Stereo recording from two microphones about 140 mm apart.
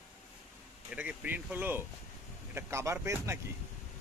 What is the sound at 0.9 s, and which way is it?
Speech, 10° right (ahead or behind).